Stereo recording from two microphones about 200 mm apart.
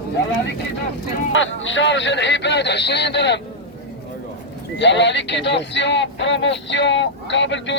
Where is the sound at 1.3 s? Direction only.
70° left (ahead or behind).